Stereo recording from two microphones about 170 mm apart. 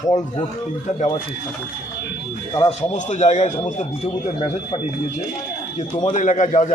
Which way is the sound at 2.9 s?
45° left (ahead or behind).